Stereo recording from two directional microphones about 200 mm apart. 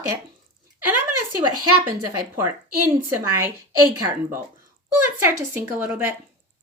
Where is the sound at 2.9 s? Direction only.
15° right (ahead or behind).